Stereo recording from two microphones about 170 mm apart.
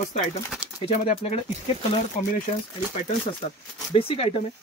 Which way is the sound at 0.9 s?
40° left (ahead or behind).